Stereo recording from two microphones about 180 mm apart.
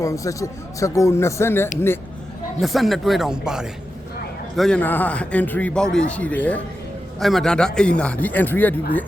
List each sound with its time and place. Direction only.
0.0 s a man's voice: 15° left (ahead or behind)
2.6 s a man's voice: centre (ahead or behind)